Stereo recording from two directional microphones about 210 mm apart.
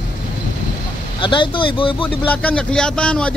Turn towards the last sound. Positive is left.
turn(degrees=5)  # may be behind; listen again after turning